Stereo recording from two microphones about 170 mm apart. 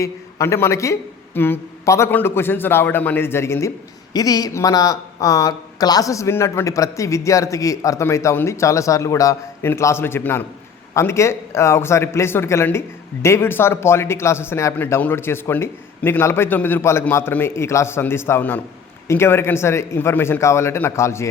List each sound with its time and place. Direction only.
0.0 s speech: 15° left (ahead or behind)